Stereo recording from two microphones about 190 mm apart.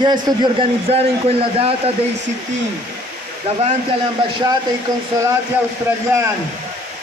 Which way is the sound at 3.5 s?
30° right (ahead or behind).